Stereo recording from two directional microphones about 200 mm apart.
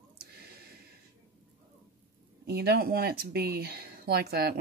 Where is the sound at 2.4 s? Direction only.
50° right (ahead or behind).